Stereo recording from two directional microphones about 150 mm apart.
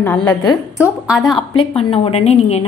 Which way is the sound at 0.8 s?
5° right (ahead or behind).